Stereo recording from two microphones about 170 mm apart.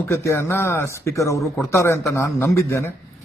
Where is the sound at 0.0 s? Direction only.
15° left (ahead or behind).